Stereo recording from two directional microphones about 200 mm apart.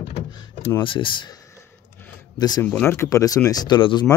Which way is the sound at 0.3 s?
20° left (ahead or behind).